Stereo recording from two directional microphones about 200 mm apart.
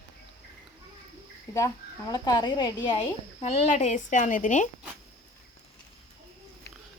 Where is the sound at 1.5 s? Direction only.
15° left (ahead or behind).